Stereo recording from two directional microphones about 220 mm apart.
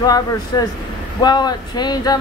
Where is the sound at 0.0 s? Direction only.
15° left (ahead or behind).